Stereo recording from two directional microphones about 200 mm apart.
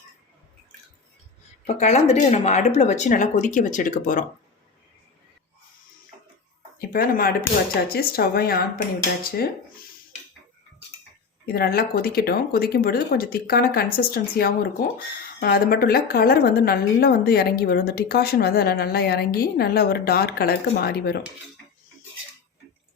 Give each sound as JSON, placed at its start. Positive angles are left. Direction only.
{"t": 1.6, "sound": "speech", "side_deg": 35}
{"t": 6.7, "sound": "speech", "side_deg": 45}
{"t": 11.4, "sound": "speech", "side_deg": 50}